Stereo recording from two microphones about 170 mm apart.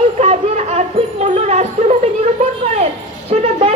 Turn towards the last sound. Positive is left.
turn(degrees=-40)  # may be behind; listen again after turning